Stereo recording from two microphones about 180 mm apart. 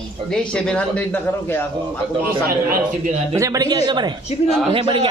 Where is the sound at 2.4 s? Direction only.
55° right (ahead or behind).